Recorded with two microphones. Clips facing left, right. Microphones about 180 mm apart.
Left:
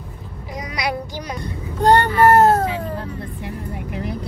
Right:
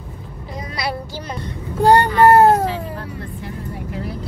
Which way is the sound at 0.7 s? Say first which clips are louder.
Left 1 dB; 15° left (ahead or behind).